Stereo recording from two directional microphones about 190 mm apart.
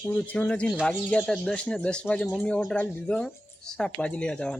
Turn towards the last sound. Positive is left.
turn(degrees=5)  # may be behind; listen again after turning